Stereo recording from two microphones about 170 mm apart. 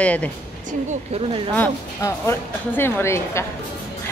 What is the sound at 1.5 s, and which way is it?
A woman's voice, 10° left (ahead or behind).